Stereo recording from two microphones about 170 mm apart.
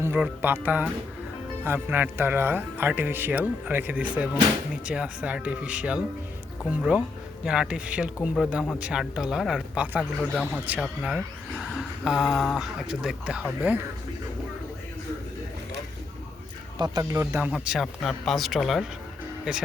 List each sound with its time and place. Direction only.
0.0 s speech: 10° right (ahead or behind)
16.7 s speech: 25° right (ahead or behind)
17.5 s speech: centre (ahead or behind)